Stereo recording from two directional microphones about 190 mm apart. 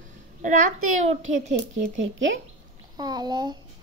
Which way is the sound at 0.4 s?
40° right (ahead or behind).